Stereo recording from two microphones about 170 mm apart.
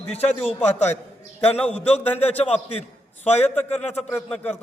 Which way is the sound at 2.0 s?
10° left (ahead or behind).